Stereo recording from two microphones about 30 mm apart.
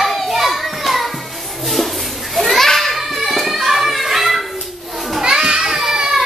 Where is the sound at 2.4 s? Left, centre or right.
Centre.